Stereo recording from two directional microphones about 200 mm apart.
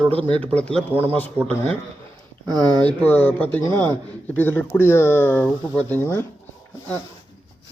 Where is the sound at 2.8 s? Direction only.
10° left (ahead or behind).